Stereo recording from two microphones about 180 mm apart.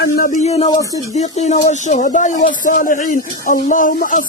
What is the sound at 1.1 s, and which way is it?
Speech, 40° left (ahead or behind).